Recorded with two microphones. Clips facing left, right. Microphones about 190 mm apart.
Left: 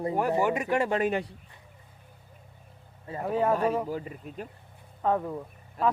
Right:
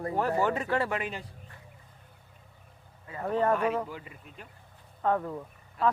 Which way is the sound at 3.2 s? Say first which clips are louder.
Left 1 dB; 5° left (ahead or behind).